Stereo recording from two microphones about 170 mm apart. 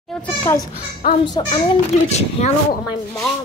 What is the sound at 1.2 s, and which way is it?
A child's voice, 30° left (ahead or behind).